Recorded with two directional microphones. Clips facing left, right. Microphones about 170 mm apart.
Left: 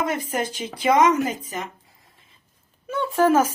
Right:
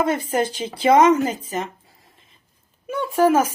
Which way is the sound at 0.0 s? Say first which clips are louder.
Right 4 dB; 30° right (ahead or behind).